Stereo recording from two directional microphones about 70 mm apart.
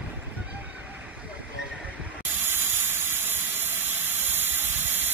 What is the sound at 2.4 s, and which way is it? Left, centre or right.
Steam, right.